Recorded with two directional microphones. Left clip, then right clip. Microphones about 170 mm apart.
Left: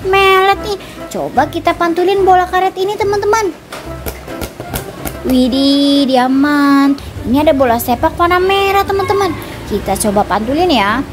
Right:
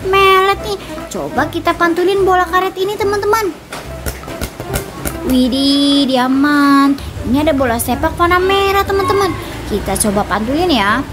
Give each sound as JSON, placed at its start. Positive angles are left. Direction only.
{"t": 0.1, "sound": "speech", "side_deg": 20}
{"t": 5.3, "sound": "speech", "side_deg": 15}